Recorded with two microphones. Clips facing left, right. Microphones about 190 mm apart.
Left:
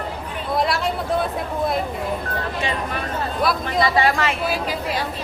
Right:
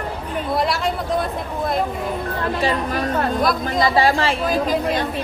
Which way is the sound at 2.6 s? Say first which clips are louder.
Right 6 dB; 35° right (ahead or behind).